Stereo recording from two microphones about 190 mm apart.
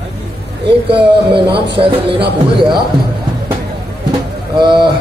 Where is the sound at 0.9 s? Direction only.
25° right (ahead or behind).